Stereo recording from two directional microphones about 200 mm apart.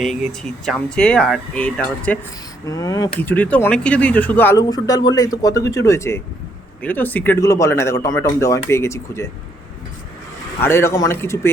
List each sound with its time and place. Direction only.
0.0 s speech: centre (ahead or behind)
2.6 s speech: 15° left (ahead or behind)
10.6 s speech: 10° left (ahead or behind)